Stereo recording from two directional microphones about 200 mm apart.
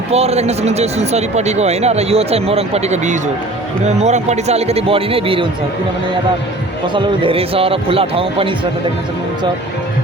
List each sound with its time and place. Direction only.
0.1 s speech: 30° right (ahead or behind)
6.8 s speech: 25° right (ahead or behind)